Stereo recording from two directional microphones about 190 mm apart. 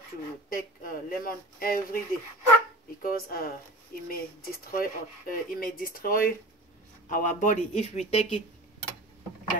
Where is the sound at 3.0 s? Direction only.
50° left (ahead or behind).